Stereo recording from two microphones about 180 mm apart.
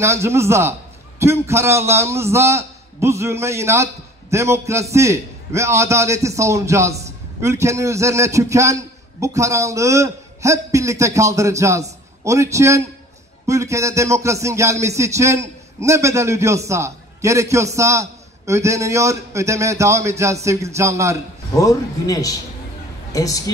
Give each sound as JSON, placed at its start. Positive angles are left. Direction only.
{"t": 0.0, "sound": "speech", "side_deg": -15}
{"t": 21.5, "sound": "a man's voice", "side_deg": 20}